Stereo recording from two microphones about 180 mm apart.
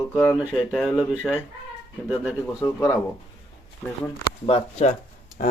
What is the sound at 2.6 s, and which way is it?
Speech, 15° left (ahead or behind).